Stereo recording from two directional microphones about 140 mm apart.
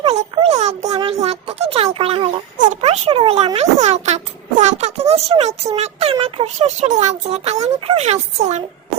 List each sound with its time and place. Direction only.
0.3 s a child's voice: 50° right (ahead or behind)